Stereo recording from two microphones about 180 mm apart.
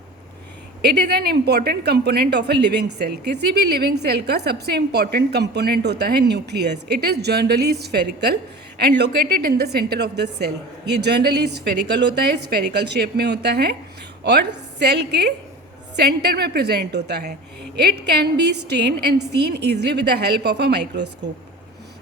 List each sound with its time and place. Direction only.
0.8 s a woman's voice: 60° right (ahead or behind)